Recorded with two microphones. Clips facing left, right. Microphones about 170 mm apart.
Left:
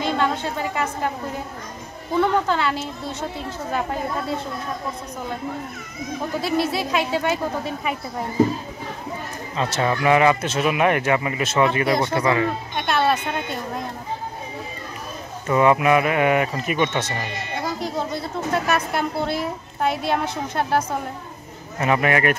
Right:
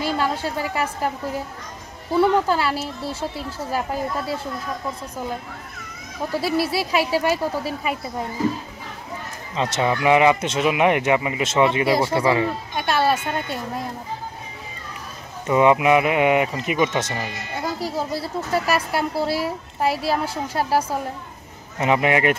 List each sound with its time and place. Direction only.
0.0 s a woman's voice: 5° right (ahead or behind)
2.1 s a child's voice: 10° right (ahead or behind)
6.3 s a child's voice: 10° right (ahead or behind)
9.6 s speech: 20° right (ahead or behind)
12.4 s speech: 5° right (ahead or behind)
15.4 s speech: 15° right (ahead or behind)
17.7 s a woman's voice: 5° right (ahead or behind)
21.7 s speech: 20° right (ahead or behind)